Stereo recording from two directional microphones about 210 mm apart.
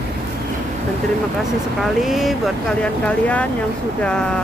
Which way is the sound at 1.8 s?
Centre (ahead or behind).